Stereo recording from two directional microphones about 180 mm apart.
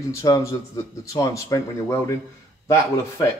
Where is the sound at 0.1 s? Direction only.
15° left (ahead or behind).